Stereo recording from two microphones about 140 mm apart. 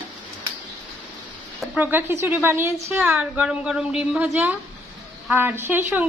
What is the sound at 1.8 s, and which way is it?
A woman's voice, 15° right (ahead or behind).